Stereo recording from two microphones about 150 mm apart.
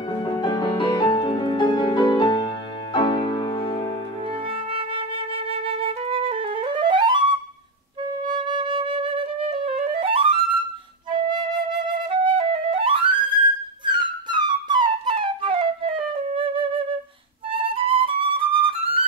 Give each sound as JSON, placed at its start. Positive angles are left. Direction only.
{"t": 0.2, "sound": "music", "side_deg": 30}
{"t": 4.3, "sound": "flute", "side_deg": -40}
{"t": 17.5, "sound": "music", "side_deg": -35}